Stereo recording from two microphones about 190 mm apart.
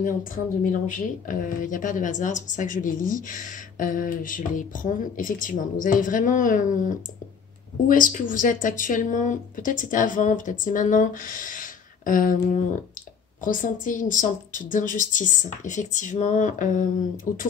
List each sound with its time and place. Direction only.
0.0 s speech: 45° left (ahead or behind)
13.4 s speech: 45° left (ahead or behind)